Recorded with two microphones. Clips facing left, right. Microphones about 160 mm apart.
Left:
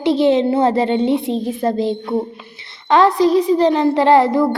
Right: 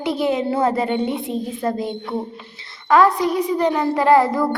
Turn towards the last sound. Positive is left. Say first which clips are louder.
# left 3 dB
turn(degrees=25)  # may be behind; listen again after turning